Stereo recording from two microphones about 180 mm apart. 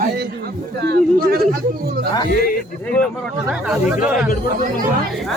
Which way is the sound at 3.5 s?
5° right (ahead or behind).